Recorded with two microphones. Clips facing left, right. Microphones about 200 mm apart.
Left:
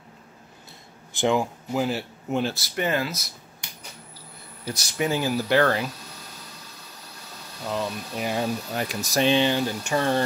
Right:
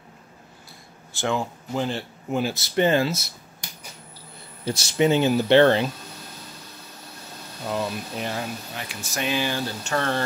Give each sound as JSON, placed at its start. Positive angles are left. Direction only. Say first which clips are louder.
{"t": 1.1, "sound": "speech", "louder": "left 3 dB", "side_deg": 15}
{"t": 2.5, "sound": "speech", "louder": "right 6 dB", "side_deg": -25}
{"t": 4.6, "sound": "speech", "louder": "right 6 dB", "side_deg": -25}
{"t": 7.6, "sound": "speech", "louder": "right 1 dB", "side_deg": -5}
{"t": 8.7, "sound": "speech", "louder": "left 7 dB", "side_deg": 40}